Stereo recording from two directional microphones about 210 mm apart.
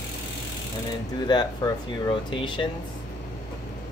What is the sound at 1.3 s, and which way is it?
Speech, 20° left (ahead or behind).